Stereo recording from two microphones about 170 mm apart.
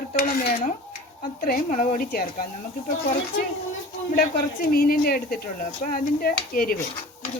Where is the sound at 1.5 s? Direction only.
50° left (ahead or behind).